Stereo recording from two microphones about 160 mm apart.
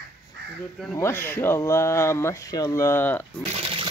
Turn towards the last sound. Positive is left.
turn(degrees=15)  # may be behind; listen again after turning